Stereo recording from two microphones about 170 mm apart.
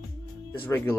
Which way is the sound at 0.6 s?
15° left (ahead or behind).